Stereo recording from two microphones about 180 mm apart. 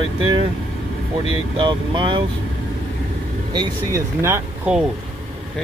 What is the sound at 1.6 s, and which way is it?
Speech, 30° right (ahead or behind).